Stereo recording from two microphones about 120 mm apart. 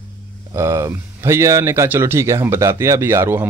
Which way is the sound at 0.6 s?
20° right (ahead or behind).